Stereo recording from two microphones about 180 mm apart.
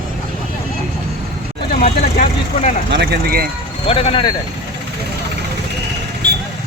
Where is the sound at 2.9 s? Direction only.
65° right (ahead or behind).